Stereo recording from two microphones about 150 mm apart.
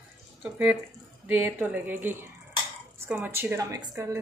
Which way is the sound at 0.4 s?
10° right (ahead or behind).